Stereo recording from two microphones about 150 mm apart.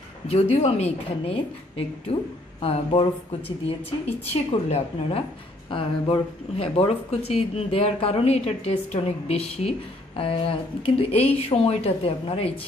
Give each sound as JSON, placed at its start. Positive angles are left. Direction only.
{"t": 0.3, "sound": "a woman's voice", "side_deg": 45}